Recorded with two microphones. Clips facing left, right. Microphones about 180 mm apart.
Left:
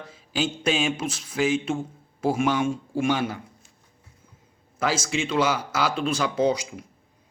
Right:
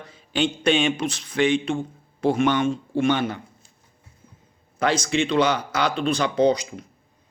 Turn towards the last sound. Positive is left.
turn(degrees=5)  # may be behind; listen again after turning